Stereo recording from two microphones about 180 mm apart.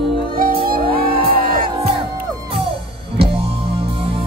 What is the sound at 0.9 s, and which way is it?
Music, 55° right (ahead or behind).